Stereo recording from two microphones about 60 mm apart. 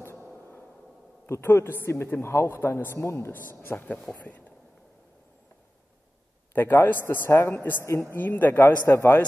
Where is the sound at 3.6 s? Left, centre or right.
Left.